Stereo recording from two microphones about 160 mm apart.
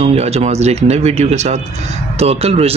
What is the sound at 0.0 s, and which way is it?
Speech, 40° right (ahead or behind).